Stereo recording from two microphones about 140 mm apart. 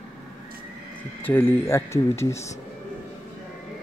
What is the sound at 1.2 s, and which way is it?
Speech, 15° left (ahead or behind).